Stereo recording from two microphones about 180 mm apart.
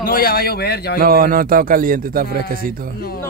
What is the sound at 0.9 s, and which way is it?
A man's voice, 55° right (ahead or behind).